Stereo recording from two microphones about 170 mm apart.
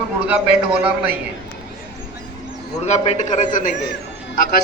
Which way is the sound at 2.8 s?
40° left (ahead or behind).